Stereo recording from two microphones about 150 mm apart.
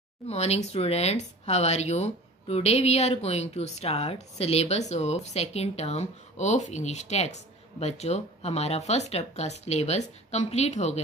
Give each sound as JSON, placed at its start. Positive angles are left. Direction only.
{"t": 0.3, "sound": "speech", "side_deg": 45}